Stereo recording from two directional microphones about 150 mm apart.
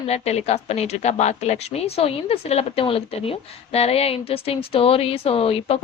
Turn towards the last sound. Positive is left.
turn(degrees=40)  # may be behind; listen again after turning